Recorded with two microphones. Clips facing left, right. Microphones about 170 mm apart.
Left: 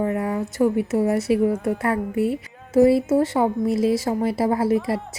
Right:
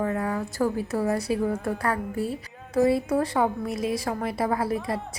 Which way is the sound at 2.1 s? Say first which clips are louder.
Left 7 dB; 65° left (ahead or behind).